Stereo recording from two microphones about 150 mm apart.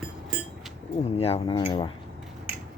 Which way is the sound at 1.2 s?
40° left (ahead or behind).